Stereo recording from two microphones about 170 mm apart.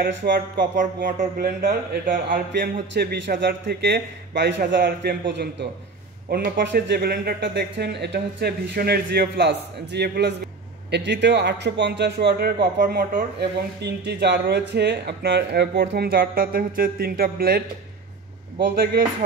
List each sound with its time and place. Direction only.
0.0 s speech: 75° right (ahead or behind)
0.7 s a sound: 50° right (ahead or behind)
2.0 s speech: 55° right (ahead or behind)
2.9 s speech: 70° right (ahead or behind); by 4.6 s 90° right
4.6 s a man's voice: 75° right (ahead or behind); by 5.7 s 90° right
6.3 s speech: 65° right (ahead or behind)
9.9 s speech: 75° right (ahead or behind)
10.9 s a man's voice: 90° right
12.8 s speech: 60° right (ahead or behind)